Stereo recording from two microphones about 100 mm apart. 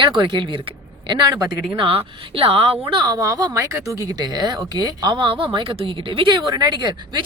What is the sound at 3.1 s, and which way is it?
Speech, 35° right (ahead or behind).